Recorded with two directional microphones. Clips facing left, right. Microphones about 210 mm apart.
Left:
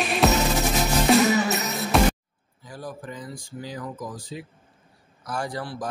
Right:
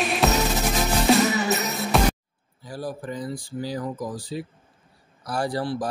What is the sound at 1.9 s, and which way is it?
Music, centre (ahead or behind).